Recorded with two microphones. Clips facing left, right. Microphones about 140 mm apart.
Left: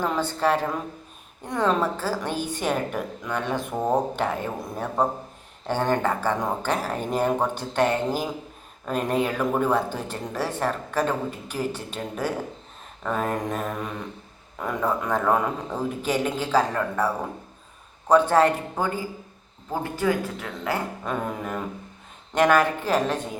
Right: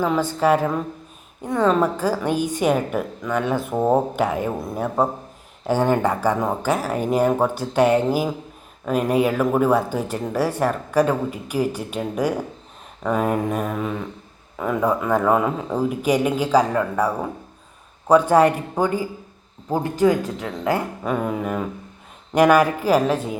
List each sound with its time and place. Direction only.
0.0 s speech: 10° right (ahead or behind)
4.6 s a sound: 5° right (ahead or behind)
5.6 s speech: 10° right (ahead or behind)
18.1 s speech: 10° right (ahead or behind)
21.0 s a sound: 5° right (ahead or behind)
22.4 s speech: 10° right (ahead or behind)